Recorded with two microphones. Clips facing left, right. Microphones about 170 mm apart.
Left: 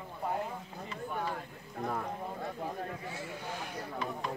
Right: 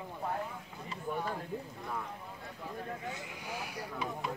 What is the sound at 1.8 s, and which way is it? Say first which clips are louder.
Speech: left 5 dB; 50° left (ahead or behind).